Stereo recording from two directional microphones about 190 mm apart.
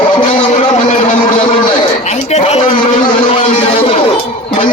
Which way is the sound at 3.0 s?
25° left (ahead or behind).